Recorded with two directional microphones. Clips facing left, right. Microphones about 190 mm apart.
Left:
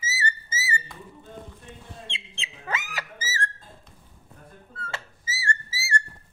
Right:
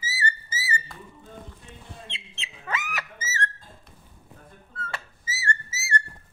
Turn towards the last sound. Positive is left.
turn(degrees=30)  # may be behind; listen again after turning